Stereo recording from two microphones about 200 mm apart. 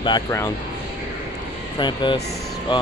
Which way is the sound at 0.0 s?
20° left (ahead or behind).